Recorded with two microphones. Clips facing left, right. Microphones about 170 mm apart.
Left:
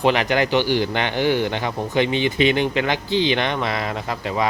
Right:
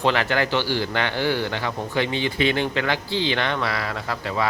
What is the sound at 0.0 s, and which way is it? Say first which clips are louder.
Speech: left 3 dB; 15° left (ahead or behind).